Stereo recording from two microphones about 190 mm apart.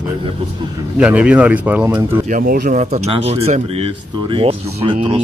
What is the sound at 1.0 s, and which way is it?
Speech, 5° right (ahead or behind).